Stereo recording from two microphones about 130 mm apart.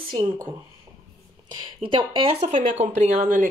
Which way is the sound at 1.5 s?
40° right (ahead or behind).